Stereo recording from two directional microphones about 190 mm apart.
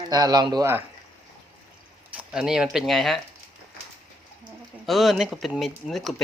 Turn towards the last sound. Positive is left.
turn(degrees=0)  # may be behind; listen again after turning